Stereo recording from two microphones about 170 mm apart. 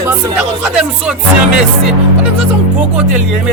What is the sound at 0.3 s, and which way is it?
Speech, 5° right (ahead or behind).